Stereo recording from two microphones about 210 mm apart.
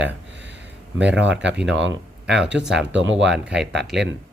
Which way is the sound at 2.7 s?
60° right (ahead or behind).